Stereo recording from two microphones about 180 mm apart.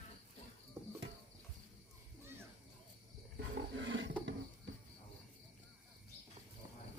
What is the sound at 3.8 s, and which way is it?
Wild animals, 90° right.